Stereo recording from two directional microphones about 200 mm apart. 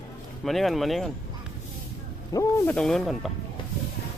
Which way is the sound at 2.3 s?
15° left (ahead or behind).